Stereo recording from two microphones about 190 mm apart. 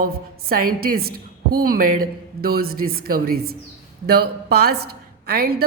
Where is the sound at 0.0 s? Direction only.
50° right (ahead or behind).